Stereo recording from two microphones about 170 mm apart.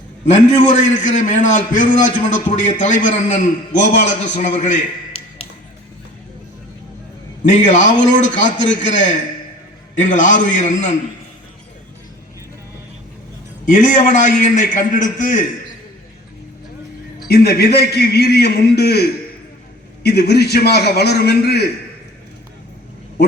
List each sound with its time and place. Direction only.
0.3 s a man's voice: 45° left (ahead or behind)
7.4 s a man's voice: 45° left (ahead or behind)
13.7 s a man's voice: 50° left (ahead or behind)
17.2 s a man's voice: 65° left (ahead or behind)